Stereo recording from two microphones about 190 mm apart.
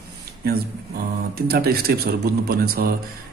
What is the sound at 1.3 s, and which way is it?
Speech, 55° right (ahead or behind).